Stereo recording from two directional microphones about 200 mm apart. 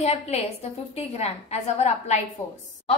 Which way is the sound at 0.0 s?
30° left (ahead or behind).